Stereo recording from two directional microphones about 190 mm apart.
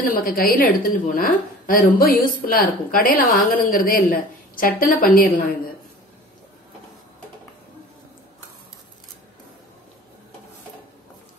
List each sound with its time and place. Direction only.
0.1 s a woman's voice: 50° left (ahead or behind)